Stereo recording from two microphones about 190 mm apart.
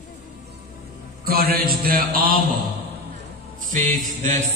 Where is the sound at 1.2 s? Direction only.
55° right (ahead or behind).